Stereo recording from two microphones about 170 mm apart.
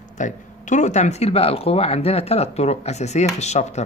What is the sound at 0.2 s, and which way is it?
Speech, 45° left (ahead or behind).